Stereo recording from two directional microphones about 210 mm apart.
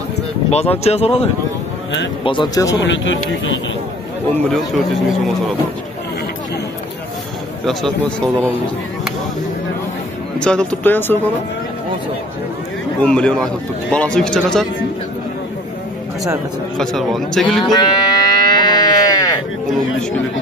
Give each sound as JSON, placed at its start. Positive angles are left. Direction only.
{"t": 0.5, "sound": "speech", "side_deg": 30}
{"t": 2.9, "sound": "speech", "side_deg": 60}
{"t": 4.3, "sound": "a man's voice", "side_deg": 0}
{"t": 10.4, "sound": "speech", "side_deg": 5}
{"t": 13.0, "sound": "a man's voice", "side_deg": 5}
{"t": 16.7, "sound": "a man's voice", "side_deg": 0}
{"t": 17.6, "sound": "livestock", "side_deg": 20}